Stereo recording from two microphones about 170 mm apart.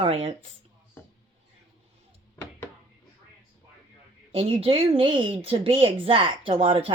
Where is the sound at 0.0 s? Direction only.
35° right (ahead or behind).